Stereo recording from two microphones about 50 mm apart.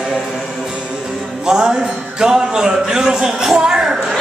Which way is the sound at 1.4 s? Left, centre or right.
Centre.